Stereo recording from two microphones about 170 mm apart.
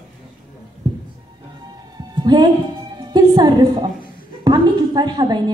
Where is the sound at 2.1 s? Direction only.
25° right (ahead or behind).